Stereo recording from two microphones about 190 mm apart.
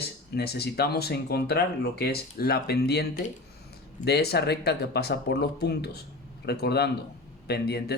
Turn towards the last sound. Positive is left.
turn(degrees=60)  # may be behind; listen again after turning